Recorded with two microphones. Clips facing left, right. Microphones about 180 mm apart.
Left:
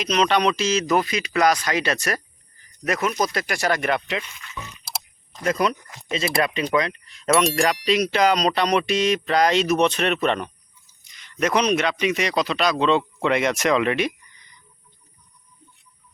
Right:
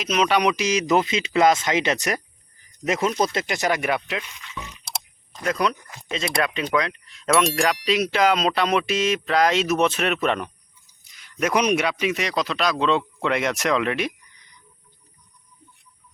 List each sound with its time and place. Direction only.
0.0 s a man's voice: 5° right (ahead or behind)